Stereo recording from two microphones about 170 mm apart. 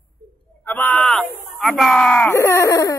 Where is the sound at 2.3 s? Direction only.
15° left (ahead or behind).